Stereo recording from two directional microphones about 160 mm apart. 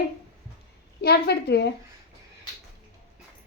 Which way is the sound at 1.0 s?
90° left.